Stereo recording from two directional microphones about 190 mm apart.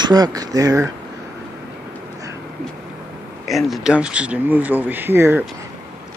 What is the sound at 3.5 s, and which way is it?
Speech, centre (ahead or behind).